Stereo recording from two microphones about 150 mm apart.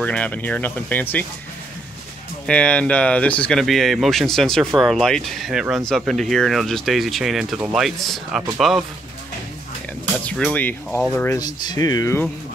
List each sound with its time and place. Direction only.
0.0 s speech: 10° left (ahead or behind)
2.4 s speech: 10° left (ahead or behind)
10.2 s speech: 5° left (ahead or behind)
11.3 s speech: 25° left (ahead or behind)